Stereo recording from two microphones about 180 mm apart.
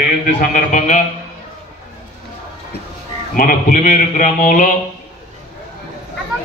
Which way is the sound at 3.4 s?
50° left (ahead or behind).